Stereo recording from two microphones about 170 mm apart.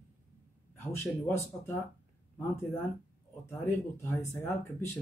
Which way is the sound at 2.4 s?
15° left (ahead or behind).